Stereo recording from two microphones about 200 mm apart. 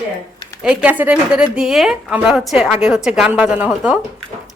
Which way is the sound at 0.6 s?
5° right (ahead or behind).